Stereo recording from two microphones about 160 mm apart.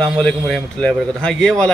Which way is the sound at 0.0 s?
Centre (ahead or behind).